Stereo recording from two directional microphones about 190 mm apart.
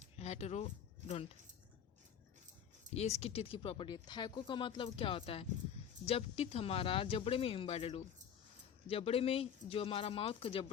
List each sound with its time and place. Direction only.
0.2 s speech: 35° left (ahead or behind)
2.9 s speech: 35° left (ahead or behind)